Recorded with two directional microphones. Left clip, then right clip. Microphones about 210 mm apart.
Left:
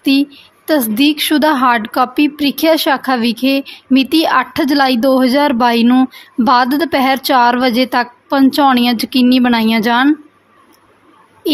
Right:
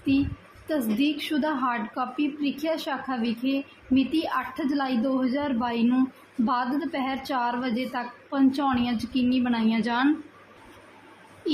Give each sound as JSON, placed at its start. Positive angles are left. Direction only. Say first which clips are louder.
{"t": 0.7, "sound": "a woman's voice", "louder": "left 13 dB", "side_deg": 50}